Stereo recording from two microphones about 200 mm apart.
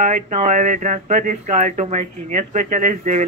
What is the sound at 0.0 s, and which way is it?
Speech, 40° right (ahead or behind).